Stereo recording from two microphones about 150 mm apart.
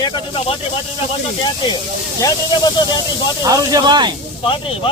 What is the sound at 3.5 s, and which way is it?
Speech, 25° right (ahead or behind).